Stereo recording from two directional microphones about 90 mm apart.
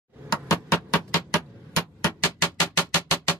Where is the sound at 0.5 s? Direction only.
40° left (ahead or behind).